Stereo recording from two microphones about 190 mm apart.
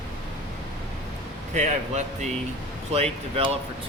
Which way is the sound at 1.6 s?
40° right (ahead or behind).